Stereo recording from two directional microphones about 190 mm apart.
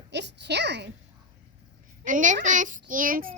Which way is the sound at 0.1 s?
65° right (ahead or behind).